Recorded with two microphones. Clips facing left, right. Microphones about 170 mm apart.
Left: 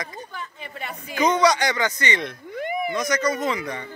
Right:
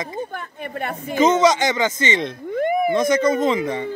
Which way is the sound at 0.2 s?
55° right (ahead or behind).